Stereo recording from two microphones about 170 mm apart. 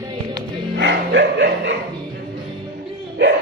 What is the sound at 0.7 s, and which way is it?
Music, 90° right.